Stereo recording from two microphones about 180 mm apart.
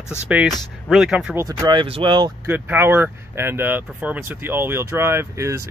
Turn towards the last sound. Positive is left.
turn(degrees=-15)  # may be behind; listen again after turning